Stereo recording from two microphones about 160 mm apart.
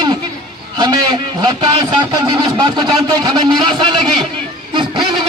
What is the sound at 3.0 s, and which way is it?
A man's voice, 25° right (ahead or behind).